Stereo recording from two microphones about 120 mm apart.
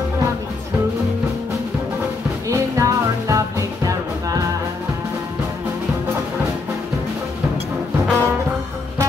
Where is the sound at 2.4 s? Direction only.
25° right (ahead or behind).